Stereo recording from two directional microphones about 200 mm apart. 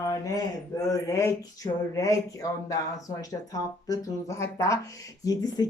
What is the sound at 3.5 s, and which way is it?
Speech, 15° left (ahead or behind).